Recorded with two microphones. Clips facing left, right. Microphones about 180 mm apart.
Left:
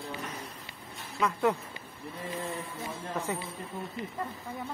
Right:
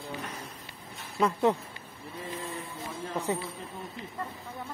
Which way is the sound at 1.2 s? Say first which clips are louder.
Right 3 dB; 25° right (ahead or behind).